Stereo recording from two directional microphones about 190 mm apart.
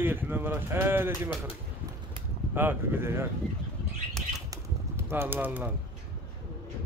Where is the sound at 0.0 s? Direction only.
10° right (ahead or behind).